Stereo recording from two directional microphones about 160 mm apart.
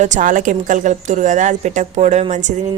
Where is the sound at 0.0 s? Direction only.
50° right (ahead or behind).